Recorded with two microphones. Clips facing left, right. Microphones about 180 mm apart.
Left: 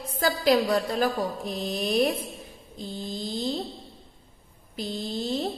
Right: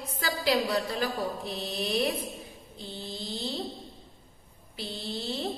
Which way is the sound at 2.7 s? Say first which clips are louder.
Left 6 dB; 45° left (ahead or behind).